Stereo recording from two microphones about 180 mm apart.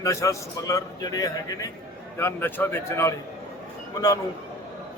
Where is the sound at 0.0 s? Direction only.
15° left (ahead or behind).